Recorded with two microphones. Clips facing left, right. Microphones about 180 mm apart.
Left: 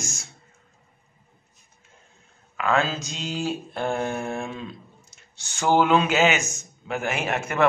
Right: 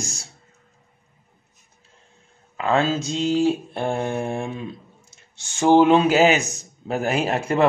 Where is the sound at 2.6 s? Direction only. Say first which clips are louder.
Right 3 dB; 25° right (ahead or behind).